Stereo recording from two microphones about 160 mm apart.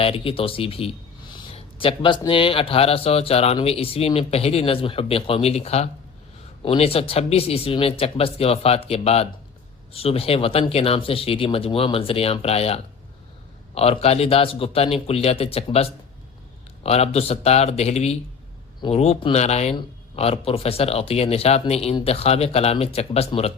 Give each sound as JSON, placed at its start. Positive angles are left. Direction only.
{"t": 0.0, "sound": "speech", "side_deg": 35}